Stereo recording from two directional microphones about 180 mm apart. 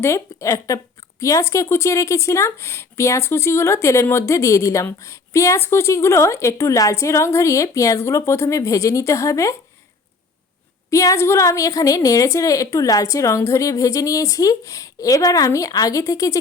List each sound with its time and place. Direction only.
0.0 s speech: 15° left (ahead or behind)
10.8 s a woman's voice: 15° left (ahead or behind)